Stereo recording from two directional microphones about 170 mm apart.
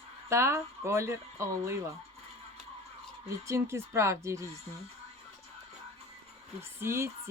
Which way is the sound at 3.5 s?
15° right (ahead or behind).